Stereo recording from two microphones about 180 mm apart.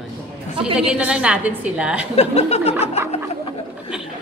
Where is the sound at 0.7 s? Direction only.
5° right (ahead or behind).